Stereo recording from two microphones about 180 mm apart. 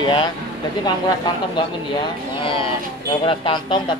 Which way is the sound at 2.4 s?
30° left (ahead or behind).